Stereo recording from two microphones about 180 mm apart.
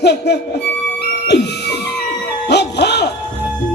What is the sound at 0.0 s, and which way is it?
Speech, 70° left (ahead or behind).